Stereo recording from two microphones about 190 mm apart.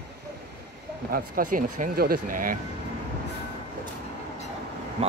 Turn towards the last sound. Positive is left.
turn(degrees=-30)  # may be behind; listen again after turning